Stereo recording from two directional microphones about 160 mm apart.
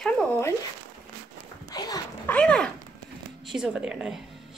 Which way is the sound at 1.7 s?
25° left (ahead or behind).